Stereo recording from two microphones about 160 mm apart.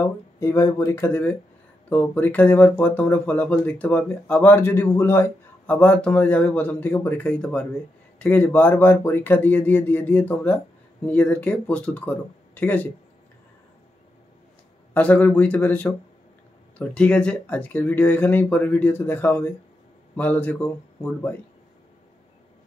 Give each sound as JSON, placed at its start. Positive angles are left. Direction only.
{"t": 0.0, "sound": "speech", "side_deg": 15}
{"t": 15.0, "sound": "speech", "side_deg": 10}